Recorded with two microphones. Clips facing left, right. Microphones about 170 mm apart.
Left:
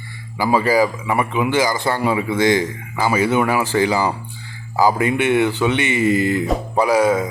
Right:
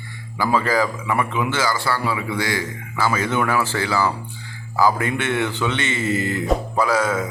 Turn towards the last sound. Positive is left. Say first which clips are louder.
# left 4 dB
turn(degrees=15)  # may be behind; listen again after turning